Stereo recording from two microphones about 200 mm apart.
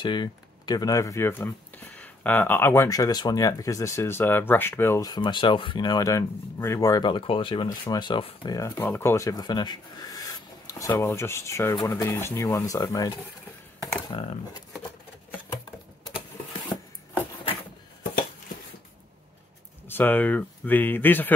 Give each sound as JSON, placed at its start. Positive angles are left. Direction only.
{"t": 0.0, "sound": "speech", "side_deg": 20}
{"t": 14.1, "sound": "speech", "side_deg": 25}
{"t": 16.7, "sound": "rub", "side_deg": 10}
{"t": 19.9, "sound": "speech", "side_deg": 10}